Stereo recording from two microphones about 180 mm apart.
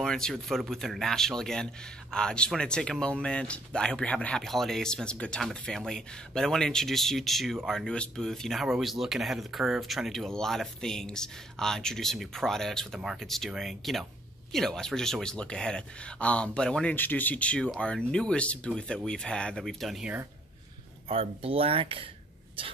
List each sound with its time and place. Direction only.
0.0 s speech: 5° left (ahead or behind)
21.1 s speech: 30° right (ahead or behind)